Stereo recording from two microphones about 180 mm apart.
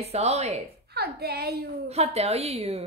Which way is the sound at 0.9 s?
60° right (ahead or behind).